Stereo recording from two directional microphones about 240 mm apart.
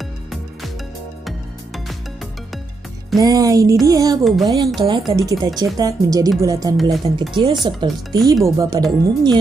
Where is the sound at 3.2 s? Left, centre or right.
Centre.